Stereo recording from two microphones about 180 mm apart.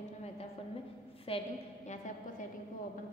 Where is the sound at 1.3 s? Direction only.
30° left (ahead or behind).